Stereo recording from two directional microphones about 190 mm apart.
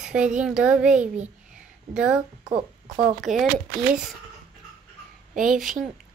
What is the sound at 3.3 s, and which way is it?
Speech, 35° right (ahead or behind).